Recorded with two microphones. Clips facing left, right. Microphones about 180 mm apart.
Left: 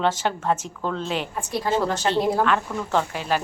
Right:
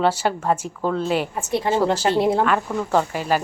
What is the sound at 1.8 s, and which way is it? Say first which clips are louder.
Speech: right 3 dB; 30° right (ahead or behind).